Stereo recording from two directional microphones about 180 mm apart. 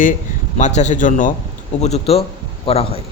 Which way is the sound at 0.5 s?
40° left (ahead or behind).